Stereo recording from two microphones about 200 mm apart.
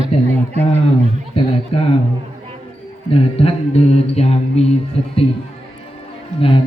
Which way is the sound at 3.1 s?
30° left (ahead or behind).